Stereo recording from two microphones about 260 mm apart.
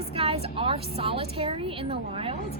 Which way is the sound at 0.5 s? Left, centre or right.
Right.